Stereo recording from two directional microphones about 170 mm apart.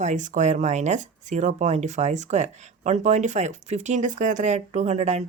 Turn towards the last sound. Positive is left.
turn(degrees=-40)  # may be behind; listen again after turning